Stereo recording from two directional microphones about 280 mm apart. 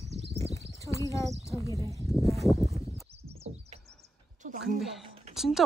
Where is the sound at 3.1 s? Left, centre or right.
Right.